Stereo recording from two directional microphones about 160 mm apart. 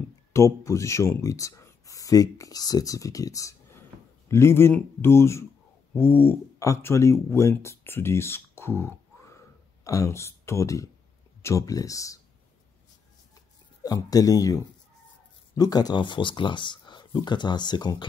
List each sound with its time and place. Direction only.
0.3 s speech: 20° left (ahead or behind)
13.8 s speech: 20° left (ahead or behind)